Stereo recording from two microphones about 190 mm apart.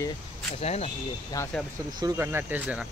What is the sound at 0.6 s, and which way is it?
Speech, 35° left (ahead or behind).